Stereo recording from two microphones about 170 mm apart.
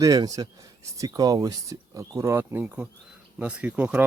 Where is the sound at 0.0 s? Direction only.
20° right (ahead or behind).